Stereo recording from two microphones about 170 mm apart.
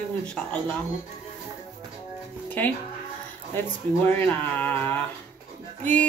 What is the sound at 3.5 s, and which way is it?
Speech, 10° left (ahead or behind).